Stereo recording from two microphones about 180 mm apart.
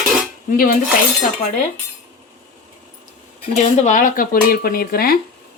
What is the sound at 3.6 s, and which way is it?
Speech, 45° left (ahead or behind).